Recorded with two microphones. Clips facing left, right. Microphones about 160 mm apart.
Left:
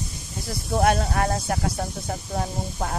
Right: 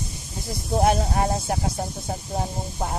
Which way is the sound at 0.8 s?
25° right (ahead or behind).